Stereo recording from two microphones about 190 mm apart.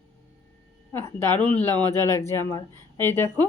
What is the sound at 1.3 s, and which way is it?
Speech, 25° right (ahead or behind).